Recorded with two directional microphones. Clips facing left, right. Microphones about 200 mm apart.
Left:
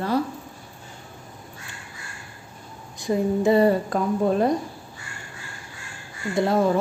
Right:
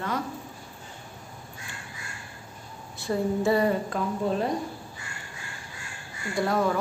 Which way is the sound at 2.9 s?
15° left (ahead or behind).